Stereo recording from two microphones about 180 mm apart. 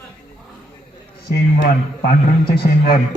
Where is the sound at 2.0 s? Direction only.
60° left (ahead or behind).